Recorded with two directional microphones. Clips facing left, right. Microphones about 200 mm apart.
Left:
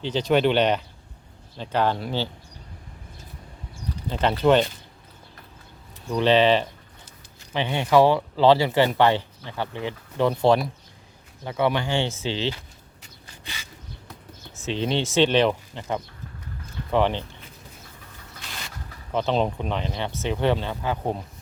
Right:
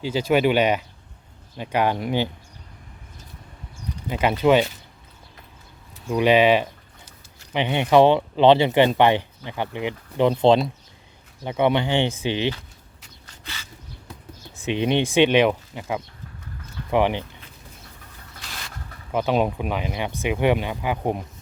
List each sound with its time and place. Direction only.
0.0 s speech: 10° right (ahead or behind)
4.1 s speech: 10° right (ahead or behind)
6.1 s speech: 10° right (ahead or behind)
13.4 s bird: 15° left (ahead or behind)
14.6 s speech: 15° right (ahead or behind)
19.1 s speech: 10° right (ahead or behind)